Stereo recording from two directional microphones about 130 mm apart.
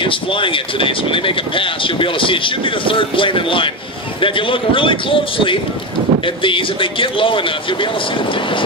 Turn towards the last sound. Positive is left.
turn(degrees=40)  # may be behind; listen again after turning